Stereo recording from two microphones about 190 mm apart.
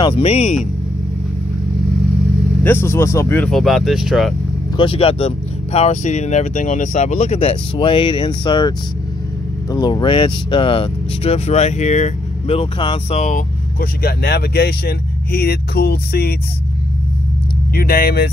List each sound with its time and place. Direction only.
0.0 s speech: 30° left (ahead or behind)
2.6 s speech: 10° left (ahead or behind)
4.7 s speech: 30° left (ahead or behind); by 16.3 s 55° left (ahead or behind)
17.7 s speech: 50° left (ahead or behind)